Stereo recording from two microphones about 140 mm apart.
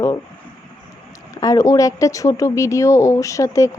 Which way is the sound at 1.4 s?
25° left (ahead or behind).